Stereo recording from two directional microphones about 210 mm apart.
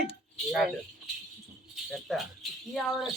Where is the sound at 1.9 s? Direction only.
Centre (ahead or behind).